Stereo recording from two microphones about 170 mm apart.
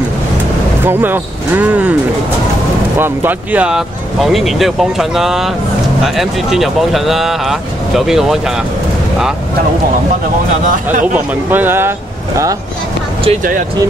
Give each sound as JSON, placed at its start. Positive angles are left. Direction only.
{"t": 0.8, "sound": "speech", "side_deg": -10}
{"t": 3.0, "sound": "speech", "side_deg": -10}
{"t": 11.1, "sound": "speech", "side_deg": -10}
{"t": 13.4, "sound": "speech", "side_deg": -55}